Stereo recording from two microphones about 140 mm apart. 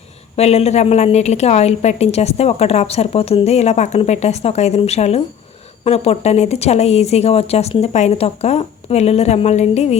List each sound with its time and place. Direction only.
0.3 s a woman's voice: 50° left (ahead or behind)